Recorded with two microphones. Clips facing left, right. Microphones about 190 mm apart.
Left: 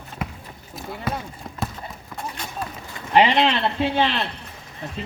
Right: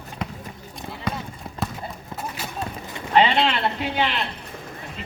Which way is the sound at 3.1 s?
20° left (ahead or behind).